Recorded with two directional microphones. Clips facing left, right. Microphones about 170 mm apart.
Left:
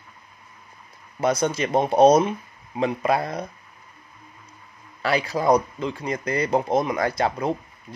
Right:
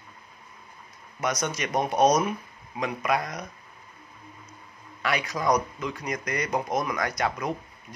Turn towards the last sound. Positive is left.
turn(degrees=30)  # may be behind; listen again after turning